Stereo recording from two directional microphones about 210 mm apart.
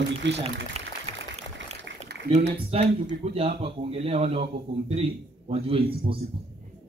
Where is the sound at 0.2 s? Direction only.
60° right (ahead or behind).